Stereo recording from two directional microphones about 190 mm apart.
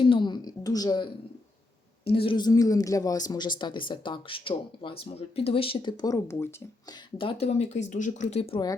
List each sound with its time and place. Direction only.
0.0 s a sound: 25° left (ahead or behind)
2.0 s speech: 30° left (ahead or behind)
7.2 s speech: 30° left (ahead or behind)